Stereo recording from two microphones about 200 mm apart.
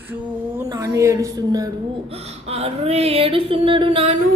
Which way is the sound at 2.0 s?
30° right (ahead or behind).